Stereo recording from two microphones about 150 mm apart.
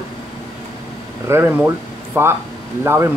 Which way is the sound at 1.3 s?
10° right (ahead or behind).